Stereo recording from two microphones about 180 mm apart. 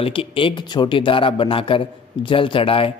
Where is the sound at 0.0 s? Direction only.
30° left (ahead or behind).